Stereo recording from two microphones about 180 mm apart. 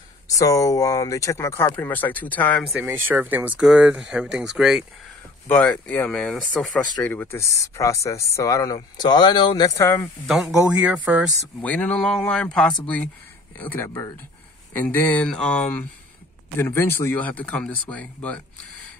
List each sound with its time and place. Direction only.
0.3 s speech: 20° left (ahead or behind)
10.2 s speech: centre (ahead or behind)
11.6 s speech: 10° left (ahead or behind)